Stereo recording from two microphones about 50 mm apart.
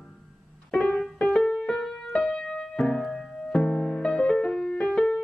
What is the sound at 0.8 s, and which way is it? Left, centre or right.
Piano, centre.